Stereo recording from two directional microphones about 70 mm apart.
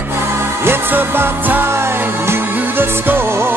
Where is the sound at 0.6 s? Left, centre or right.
Right.